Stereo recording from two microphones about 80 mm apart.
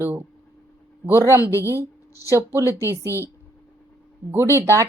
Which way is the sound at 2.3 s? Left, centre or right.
Right.